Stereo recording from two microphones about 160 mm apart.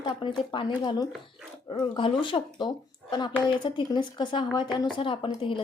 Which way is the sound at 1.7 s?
30° left (ahead or behind).